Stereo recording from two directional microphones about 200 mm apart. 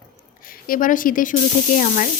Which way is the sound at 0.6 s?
45° left (ahead or behind).